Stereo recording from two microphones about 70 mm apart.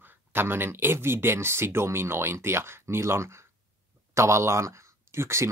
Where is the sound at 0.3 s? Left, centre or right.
Right.